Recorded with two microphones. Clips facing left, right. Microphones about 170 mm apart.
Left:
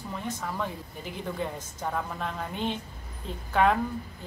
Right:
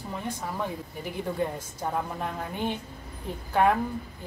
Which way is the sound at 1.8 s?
15° right (ahead or behind).